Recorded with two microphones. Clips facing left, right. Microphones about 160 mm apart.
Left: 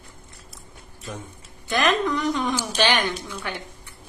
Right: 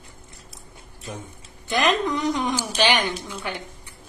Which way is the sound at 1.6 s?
15° right (ahead or behind).